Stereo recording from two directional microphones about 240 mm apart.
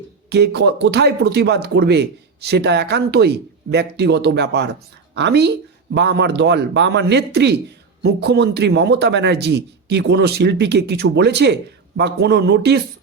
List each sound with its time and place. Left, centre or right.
0.3 s speech: right